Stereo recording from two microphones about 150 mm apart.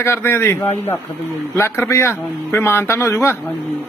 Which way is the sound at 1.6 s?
15° left (ahead or behind).